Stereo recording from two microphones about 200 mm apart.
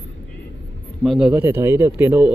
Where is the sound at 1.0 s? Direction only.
5° right (ahead or behind).